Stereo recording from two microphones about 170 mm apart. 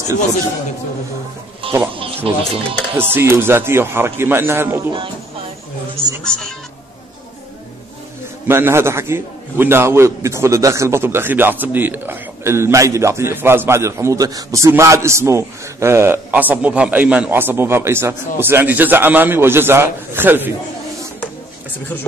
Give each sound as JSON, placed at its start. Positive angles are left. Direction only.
{"t": 1.6, "sound": "music", "side_deg": -30}
{"t": 2.0, "sound": "speech", "side_deg": -30}
{"t": 3.0, "sound": "a man's voice", "side_deg": -15}
{"t": 6.2, "sound": "speech", "side_deg": 5}
{"t": 8.5, "sound": "a man's voice", "side_deg": -15}